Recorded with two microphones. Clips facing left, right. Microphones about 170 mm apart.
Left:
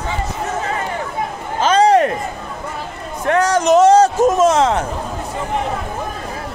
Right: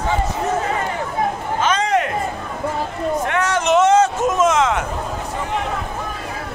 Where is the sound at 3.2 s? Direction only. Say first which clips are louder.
Left 9 dB; 35° left (ahead or behind).